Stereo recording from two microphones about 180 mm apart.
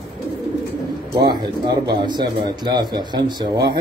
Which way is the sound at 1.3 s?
25° right (ahead or behind).